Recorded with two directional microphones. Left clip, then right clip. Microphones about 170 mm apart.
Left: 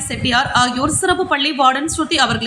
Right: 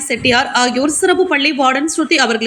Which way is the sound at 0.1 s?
15° right (ahead or behind).